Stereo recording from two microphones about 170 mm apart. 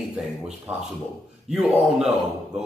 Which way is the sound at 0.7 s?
10° right (ahead or behind).